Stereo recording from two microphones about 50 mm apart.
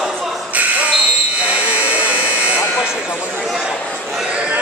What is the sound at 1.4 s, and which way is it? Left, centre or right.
Buzzer, right.